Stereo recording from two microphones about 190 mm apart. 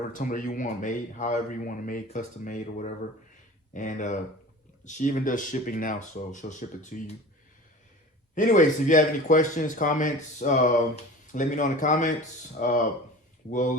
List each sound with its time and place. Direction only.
0.1 s speech: 45° left (ahead or behind)
8.4 s speech: 40° left (ahead or behind)